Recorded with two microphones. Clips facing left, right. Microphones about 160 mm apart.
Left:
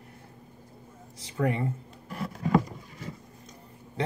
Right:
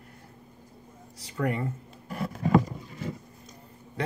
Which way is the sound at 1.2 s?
25° left (ahead or behind).